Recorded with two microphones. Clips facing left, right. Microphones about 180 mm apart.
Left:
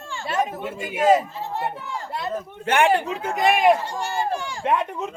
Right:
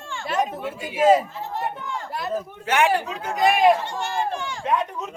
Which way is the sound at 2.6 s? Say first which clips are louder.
Left 2 dB; 55° left (ahead or behind).